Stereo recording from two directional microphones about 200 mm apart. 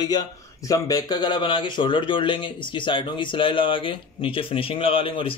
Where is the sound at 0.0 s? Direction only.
20° left (ahead or behind).